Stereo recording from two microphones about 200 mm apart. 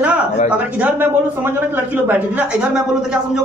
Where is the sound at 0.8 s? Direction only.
10° right (ahead or behind).